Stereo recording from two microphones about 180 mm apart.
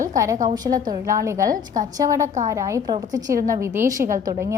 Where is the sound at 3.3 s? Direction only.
50° right (ahead or behind).